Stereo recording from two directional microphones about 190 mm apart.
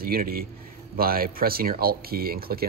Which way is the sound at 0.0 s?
50° right (ahead or behind).